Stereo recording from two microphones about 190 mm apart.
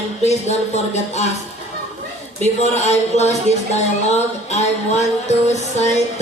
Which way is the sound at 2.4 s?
35° left (ahead or behind).